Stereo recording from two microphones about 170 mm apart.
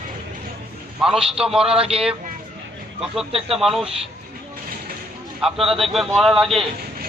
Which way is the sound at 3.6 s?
Centre (ahead or behind).